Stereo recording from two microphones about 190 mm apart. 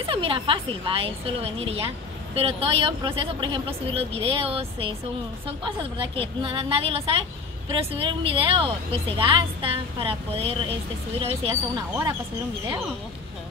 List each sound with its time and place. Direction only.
0.0 s a woman's voice: 30° right (ahead or behind)